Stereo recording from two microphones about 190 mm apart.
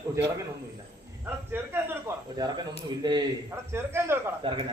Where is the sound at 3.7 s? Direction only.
10° right (ahead or behind).